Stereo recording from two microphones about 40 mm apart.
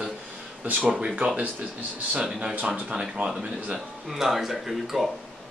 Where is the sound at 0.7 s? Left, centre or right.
Right.